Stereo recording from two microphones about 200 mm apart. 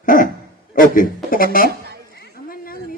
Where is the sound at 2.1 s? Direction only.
50° left (ahead or behind).